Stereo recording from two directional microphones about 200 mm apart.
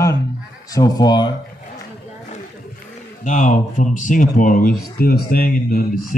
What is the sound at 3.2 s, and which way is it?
Speech, 40° left (ahead or behind).